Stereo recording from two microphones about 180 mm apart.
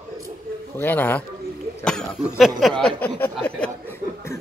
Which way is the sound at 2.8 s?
10° left (ahead or behind).